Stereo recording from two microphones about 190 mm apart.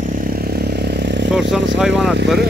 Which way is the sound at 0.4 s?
55° right (ahead or behind).